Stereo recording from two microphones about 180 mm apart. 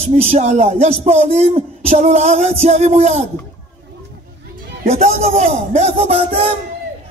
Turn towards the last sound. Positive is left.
turn(degrees=-30)  # may be behind; listen again after turning